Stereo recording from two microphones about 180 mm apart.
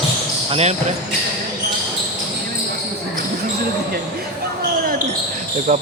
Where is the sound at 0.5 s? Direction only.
35° right (ahead or behind).